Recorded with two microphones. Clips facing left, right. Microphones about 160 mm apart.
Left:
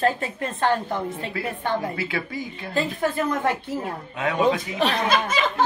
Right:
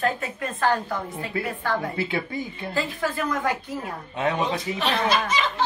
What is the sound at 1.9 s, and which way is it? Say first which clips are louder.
Speech: right 1 dB; 25° right (ahead or behind).